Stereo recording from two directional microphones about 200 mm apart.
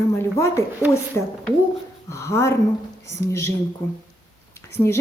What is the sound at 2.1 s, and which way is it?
Speech, 15° left (ahead or behind).